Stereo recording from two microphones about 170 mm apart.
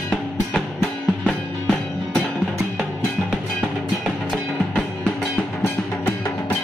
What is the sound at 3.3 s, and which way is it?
Music, centre (ahead or behind).